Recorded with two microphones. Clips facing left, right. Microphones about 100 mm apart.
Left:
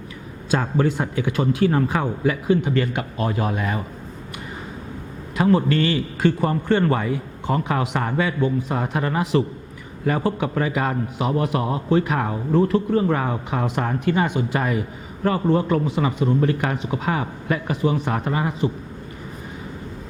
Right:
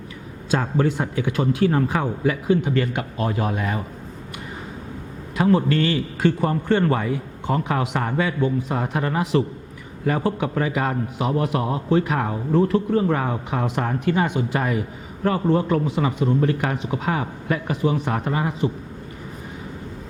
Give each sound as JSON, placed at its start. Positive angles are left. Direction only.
{"t": 0.6, "sound": "speech", "side_deg": 20}
{"t": 5.4, "sound": "speech", "side_deg": 25}
{"t": 5.7, "sound": "a man's voice", "side_deg": -5}
{"t": 6.4, "sound": "speech", "side_deg": 20}